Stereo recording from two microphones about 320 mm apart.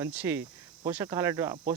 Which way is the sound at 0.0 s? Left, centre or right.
Centre.